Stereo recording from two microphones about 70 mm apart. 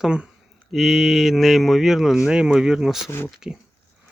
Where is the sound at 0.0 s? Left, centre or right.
Centre.